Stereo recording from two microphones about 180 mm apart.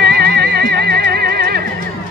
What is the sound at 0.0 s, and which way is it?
Music, 65° right (ahead or behind).